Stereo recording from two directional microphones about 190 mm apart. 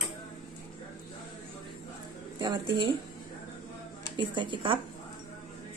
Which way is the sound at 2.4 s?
25° right (ahead or behind).